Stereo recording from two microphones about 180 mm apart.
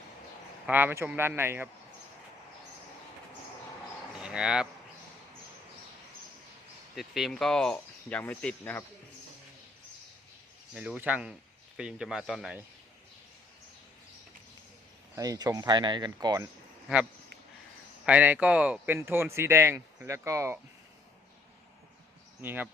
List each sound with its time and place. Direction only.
0.7 s speech: 10° right (ahead or behind)
4.2 s speech: 5° right (ahead or behind)
6.9 s speech: centre (ahead or behind)
10.8 s speech: 10° right (ahead or behind)
15.1 s speech: 20° right (ahead or behind)
18.0 s speech: 10° right (ahead or behind)
22.4 s speech: 10° right (ahead or behind)